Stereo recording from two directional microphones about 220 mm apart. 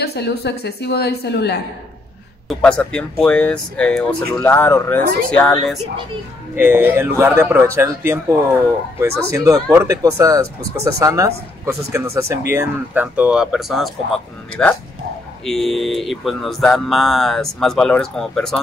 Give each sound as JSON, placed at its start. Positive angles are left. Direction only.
{"t": 0.0, "sound": "a woman's voice", "side_deg": 50}
{"t": 2.4, "sound": "speech", "side_deg": 5}
{"t": 6.5, "sound": "speech", "side_deg": -10}